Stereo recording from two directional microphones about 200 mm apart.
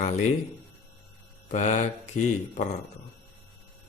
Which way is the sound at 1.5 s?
35° left (ahead or behind).